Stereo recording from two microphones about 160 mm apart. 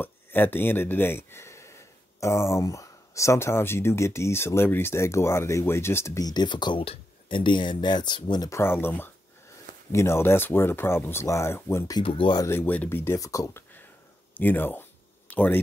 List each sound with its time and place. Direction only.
0.0 s speech: 10° left (ahead or behind)
12.0 s speech: 35° left (ahead or behind)
12.4 s speech: 10° left (ahead or behind)
14.3 s a sound: 10° left (ahead or behind)